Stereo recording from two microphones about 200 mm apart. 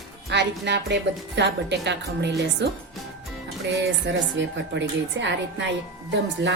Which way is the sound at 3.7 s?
60° right (ahead or behind).